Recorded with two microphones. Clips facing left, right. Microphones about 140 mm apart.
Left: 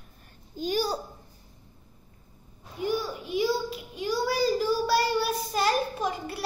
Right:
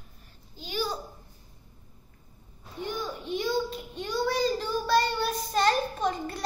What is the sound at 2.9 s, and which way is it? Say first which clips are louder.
A child's voice: left 4 dB; 5° left (ahead or behind).